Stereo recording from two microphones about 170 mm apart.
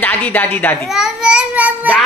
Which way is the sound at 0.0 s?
10° left (ahead or behind).